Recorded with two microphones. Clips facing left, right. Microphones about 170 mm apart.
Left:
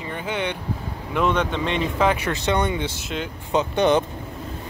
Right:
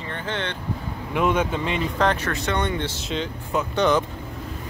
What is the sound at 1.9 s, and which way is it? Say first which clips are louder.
Speech: left 1 dB; 10° left (ahead or behind).